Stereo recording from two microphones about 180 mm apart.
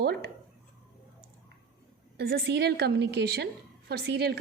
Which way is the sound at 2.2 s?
60° right (ahead or behind).